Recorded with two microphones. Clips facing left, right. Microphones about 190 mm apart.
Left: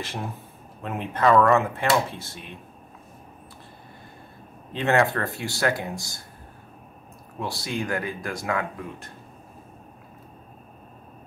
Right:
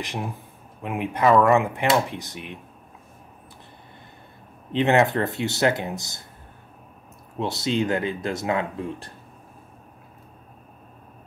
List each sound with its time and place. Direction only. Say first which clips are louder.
0.8 s speech: right 1 dB; 10° right (ahead or behind)
4.7 s speech: right 3 dB; 20° right (ahead or behind)
7.3 s speech: right 6 dB; 20° right (ahead or behind)